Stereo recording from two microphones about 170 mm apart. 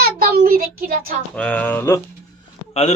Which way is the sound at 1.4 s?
5° left (ahead or behind).